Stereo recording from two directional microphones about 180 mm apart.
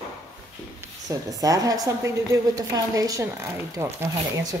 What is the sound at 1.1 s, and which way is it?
A woman's voice, 20° right (ahead or behind).